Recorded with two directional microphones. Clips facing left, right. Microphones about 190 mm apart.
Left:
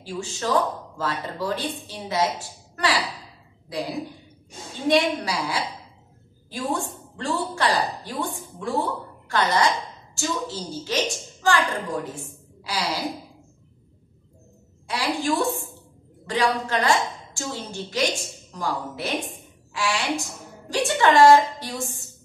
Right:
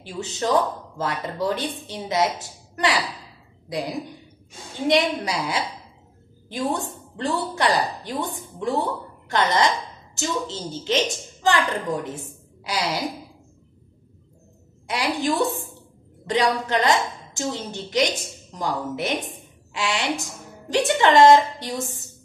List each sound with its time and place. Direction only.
0.0 s speech: 20° right (ahead or behind)
4.8 s a woman's voice: 20° right (ahead or behind)
14.9 s speech: 20° right (ahead or behind)